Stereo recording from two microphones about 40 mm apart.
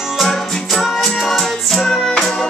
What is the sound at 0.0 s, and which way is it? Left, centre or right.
Music, centre.